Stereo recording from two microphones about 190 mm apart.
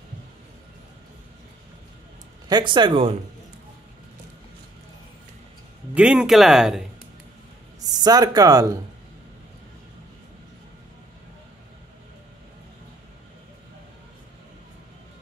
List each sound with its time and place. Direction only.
2.5 s speech: 25° right (ahead or behind)
5.9 s speech: 5° right (ahead or behind)
7.9 s speech: 20° right (ahead or behind)